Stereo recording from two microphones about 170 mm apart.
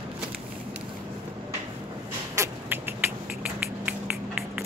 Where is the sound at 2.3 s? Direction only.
15° right (ahead or behind).